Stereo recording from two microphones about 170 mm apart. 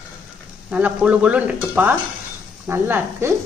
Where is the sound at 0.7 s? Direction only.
10° right (ahead or behind).